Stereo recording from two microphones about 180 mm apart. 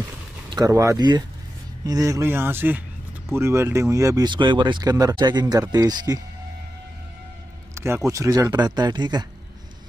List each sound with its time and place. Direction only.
0.5 s speech: 20° right (ahead or behind)
7.7 s speech: 15° right (ahead or behind)